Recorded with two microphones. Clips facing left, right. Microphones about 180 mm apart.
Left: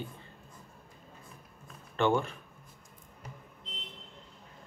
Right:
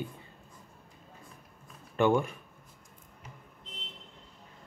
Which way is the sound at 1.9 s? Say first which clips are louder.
Right 2 dB; 10° right (ahead or behind).